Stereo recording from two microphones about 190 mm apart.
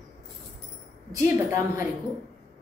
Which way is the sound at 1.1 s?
15° right (ahead or behind).